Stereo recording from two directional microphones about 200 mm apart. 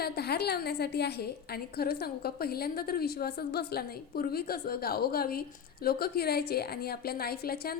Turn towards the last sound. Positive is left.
turn(degrees=50)  # may be behind; listen again after turning